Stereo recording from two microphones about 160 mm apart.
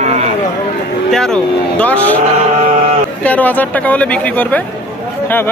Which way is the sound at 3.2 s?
10° left (ahead or behind).